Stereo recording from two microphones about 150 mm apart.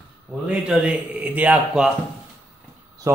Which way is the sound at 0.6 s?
10° right (ahead or behind).